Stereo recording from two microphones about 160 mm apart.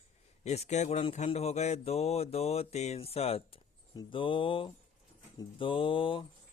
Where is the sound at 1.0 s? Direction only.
40° left (ahead or behind).